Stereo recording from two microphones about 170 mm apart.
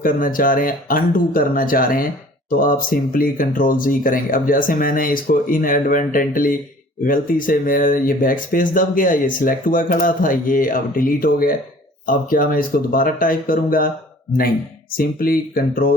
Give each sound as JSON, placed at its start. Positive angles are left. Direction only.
{"t": 0.0, "sound": "speech", "side_deg": 55}
{"t": 14.9, "sound": "speech", "side_deg": 60}